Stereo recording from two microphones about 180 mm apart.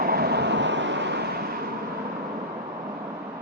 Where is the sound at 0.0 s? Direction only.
60° right (ahead or behind).